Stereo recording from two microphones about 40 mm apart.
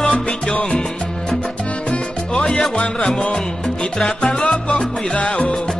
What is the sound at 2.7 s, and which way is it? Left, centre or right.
Music, left.